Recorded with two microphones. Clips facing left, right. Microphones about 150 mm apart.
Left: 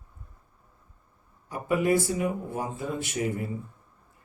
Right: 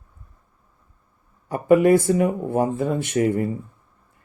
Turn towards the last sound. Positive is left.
turn(degrees=-60)  # may be behind; listen again after turning